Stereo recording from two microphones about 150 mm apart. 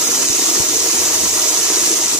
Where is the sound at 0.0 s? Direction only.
5° right (ahead or behind).